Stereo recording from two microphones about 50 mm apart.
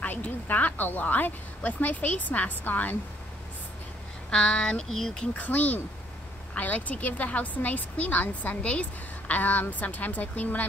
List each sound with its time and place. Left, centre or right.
0.0 s a woman's voice: left
4.3 s speech: centre
5.3 s a woman's voice: left